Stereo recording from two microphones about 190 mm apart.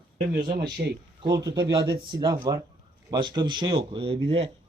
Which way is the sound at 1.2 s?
20° right (ahead or behind).